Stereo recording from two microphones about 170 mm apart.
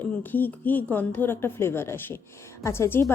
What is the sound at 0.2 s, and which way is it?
Speech, 10° left (ahead or behind).